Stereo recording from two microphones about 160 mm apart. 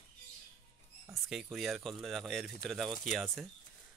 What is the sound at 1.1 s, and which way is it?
Speech, centre (ahead or behind).